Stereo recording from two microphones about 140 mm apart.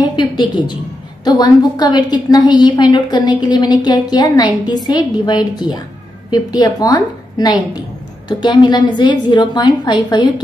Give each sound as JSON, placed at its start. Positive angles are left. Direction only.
{"t": 0.0, "sound": "a woman's voice", "side_deg": 30}